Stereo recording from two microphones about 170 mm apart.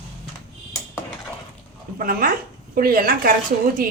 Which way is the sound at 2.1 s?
55° right (ahead or behind).